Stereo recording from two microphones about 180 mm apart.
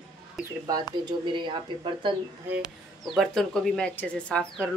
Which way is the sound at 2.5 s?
5° right (ahead or behind).